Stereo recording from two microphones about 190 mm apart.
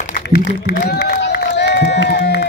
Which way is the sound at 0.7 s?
50° left (ahead or behind).